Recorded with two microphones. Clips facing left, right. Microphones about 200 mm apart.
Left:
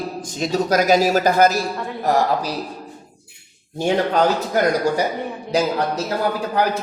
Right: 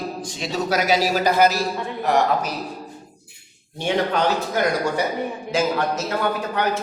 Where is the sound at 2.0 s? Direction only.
35° left (ahead or behind).